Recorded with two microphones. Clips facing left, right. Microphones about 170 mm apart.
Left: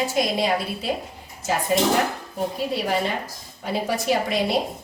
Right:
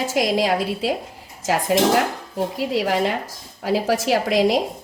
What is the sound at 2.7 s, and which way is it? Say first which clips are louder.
A woman's voice: right 4 dB; 90° right.